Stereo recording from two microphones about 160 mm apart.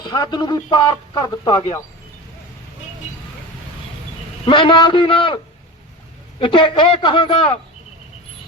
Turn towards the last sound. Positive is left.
turn(degrees=35)  # may be behind; listen again after turning